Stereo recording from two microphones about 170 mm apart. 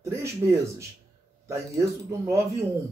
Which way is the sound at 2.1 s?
15° right (ahead or behind).